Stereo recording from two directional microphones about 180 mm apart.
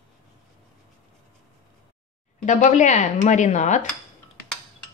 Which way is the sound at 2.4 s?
40° left (ahead or behind).